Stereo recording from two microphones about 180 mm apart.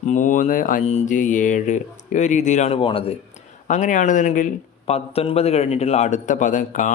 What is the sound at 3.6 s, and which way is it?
Speech, 45° left (ahead or behind).